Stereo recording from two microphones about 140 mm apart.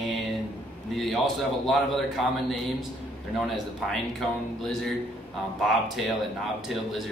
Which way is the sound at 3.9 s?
Centre (ahead or behind).